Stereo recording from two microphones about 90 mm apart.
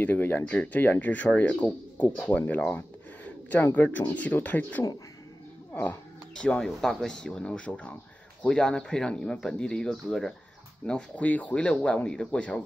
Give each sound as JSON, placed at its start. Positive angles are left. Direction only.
{"t": 0.0, "sound": "speech", "side_deg": 20}
{"t": 6.3, "sound": "speech", "side_deg": 10}